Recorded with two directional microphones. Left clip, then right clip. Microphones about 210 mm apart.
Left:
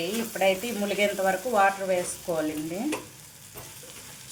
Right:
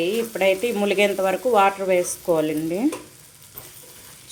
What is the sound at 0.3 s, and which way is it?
A woman's voice, 45° right (ahead or behind).